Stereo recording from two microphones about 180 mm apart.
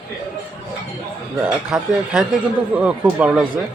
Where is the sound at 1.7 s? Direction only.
Centre (ahead or behind).